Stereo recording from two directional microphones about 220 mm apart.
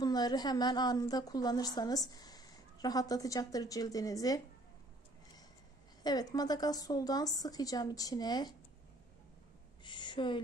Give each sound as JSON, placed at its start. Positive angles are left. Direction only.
{"t": 0.0, "sound": "a woman's voice", "side_deg": 20}
{"t": 6.0, "sound": "a woman's voice", "side_deg": 15}
{"t": 9.8, "sound": "a sound", "side_deg": 20}